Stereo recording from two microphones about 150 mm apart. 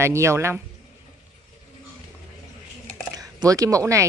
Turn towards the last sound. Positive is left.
turn(degrees=-20)  # may be behind; listen again after turning